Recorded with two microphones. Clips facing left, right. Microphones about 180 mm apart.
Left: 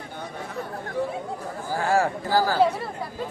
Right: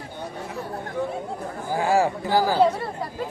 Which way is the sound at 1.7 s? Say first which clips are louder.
Right 2 dB; 15° right (ahead or behind).